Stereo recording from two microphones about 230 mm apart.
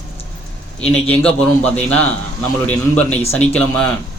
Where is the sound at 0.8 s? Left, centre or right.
Centre.